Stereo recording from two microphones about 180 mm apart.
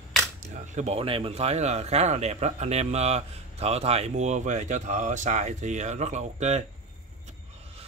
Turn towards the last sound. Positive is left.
turn(degrees=-40)  # may be behind; listen again after turning